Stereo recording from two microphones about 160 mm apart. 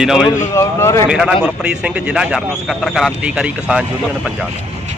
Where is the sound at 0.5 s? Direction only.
20° left (ahead or behind).